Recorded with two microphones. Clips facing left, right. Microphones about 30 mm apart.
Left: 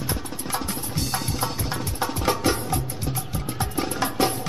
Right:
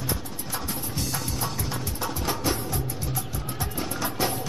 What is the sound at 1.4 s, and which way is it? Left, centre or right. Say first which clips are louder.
Music: left 3 dB; left.